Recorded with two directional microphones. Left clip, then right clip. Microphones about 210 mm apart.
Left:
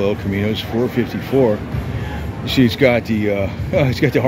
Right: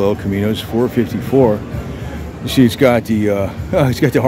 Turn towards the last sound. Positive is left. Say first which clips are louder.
# right 2 dB
turn(degrees=-15)  # may be behind; listen again after turning